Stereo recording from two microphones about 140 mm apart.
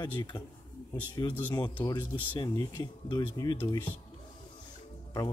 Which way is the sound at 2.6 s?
25° left (ahead or behind).